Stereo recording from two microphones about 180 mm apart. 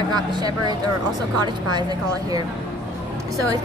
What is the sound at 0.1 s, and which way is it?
A woman's voice, 20° right (ahead or behind).